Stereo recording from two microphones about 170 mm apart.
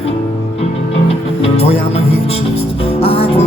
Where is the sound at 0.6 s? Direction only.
35° left (ahead or behind).